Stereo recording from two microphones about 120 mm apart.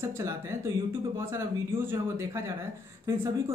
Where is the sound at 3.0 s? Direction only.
25° right (ahead or behind).